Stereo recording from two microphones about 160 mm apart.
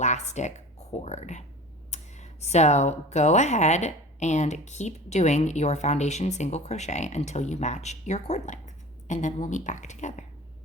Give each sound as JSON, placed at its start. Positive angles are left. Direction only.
{"t": 0.0, "sound": "speech", "side_deg": 45}